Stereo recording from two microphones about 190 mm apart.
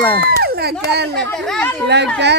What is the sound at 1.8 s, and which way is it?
Speech, 65° right (ahead or behind).